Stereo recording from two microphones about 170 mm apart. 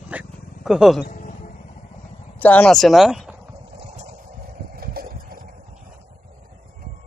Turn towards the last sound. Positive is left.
turn(degrees=-60)  # may be behind; listen again after turning